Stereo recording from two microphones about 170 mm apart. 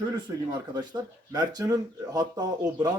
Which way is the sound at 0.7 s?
25° right (ahead or behind).